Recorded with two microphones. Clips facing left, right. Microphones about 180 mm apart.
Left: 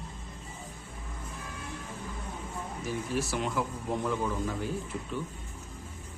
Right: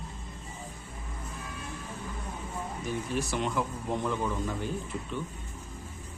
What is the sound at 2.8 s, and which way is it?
Speech, centre (ahead or behind).